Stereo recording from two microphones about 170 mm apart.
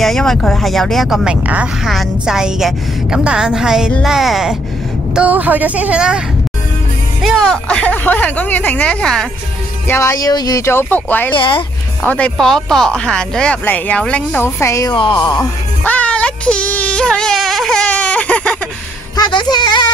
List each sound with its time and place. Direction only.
0.0 s a woman's voice: centre (ahead or behind)
9.8 s speech: 15° left (ahead or behind)
11.3 s speech: 30° left (ahead or behind)
12.1 s speech: 5° left (ahead or behind)
15.0 s speech: 30° left (ahead or behind)
15.8 s a sound: 10° left (ahead or behind)
19.1 s speech: 25° left (ahead or behind)